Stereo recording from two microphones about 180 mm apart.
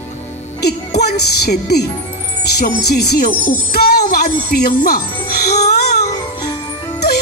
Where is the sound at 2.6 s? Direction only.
65° left (ahead or behind).